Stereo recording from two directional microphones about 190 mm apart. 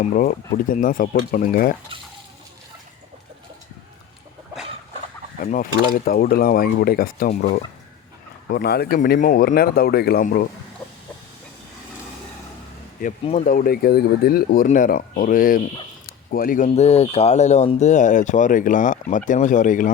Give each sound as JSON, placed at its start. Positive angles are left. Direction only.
{"t": 0.0, "sound": "speech", "side_deg": 45}
{"t": 5.4, "sound": "fowl", "side_deg": 45}
{"t": 5.9, "sound": "speech", "side_deg": 50}
{"t": 13.0, "sound": "speech", "side_deg": 45}
{"t": 16.0, "sound": "a sound", "side_deg": 50}
{"t": 16.6, "sound": "speech", "side_deg": 35}